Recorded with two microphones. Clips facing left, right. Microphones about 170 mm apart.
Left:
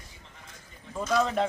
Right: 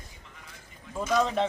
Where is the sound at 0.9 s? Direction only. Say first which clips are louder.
Even; centre (ahead or behind).